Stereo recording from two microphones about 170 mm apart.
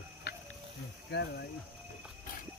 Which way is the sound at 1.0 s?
80° left.